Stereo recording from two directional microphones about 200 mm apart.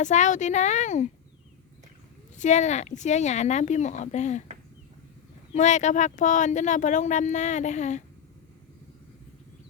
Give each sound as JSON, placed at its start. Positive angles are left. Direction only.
{"t": 0.0, "sound": "speech", "side_deg": 35}
{"t": 2.3, "sound": "speech", "side_deg": 35}
{"t": 5.5, "sound": "speech", "side_deg": 35}